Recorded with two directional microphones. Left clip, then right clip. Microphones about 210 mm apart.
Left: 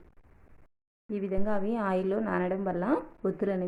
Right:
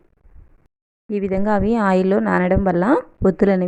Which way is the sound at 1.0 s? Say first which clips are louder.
Right 12 dB; 40° right (ahead or behind).